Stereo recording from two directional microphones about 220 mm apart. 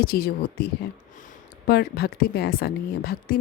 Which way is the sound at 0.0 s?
45° left (ahead or behind).